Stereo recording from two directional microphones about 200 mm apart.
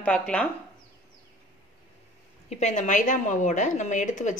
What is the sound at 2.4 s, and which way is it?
A woman's voice, 35° left (ahead or behind).